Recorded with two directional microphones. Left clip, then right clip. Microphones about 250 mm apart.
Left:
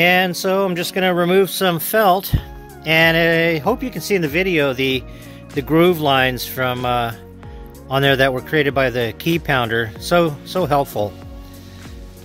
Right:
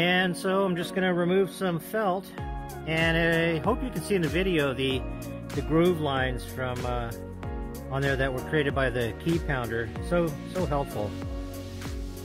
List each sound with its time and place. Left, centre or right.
0.0 s speech: left
5.6 s speech: left